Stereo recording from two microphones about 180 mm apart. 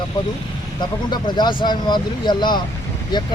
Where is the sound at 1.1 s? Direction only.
25° left (ahead or behind).